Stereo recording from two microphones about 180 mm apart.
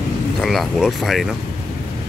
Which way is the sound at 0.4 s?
Centre (ahead or behind).